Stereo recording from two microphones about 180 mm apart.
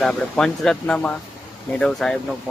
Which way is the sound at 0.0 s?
5° left (ahead or behind).